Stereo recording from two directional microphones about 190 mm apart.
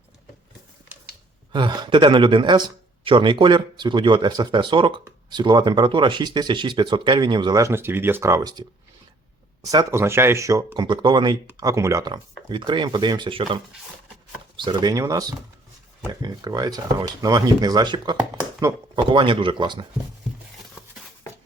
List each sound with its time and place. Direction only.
1.5 s speech: 25° right (ahead or behind)